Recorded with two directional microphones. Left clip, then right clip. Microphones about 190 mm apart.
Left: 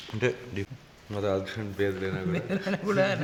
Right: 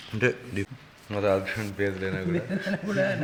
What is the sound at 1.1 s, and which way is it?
Speech, 25° left (ahead or behind).